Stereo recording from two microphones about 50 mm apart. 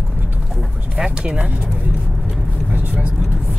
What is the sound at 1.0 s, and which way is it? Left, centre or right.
Speech, centre.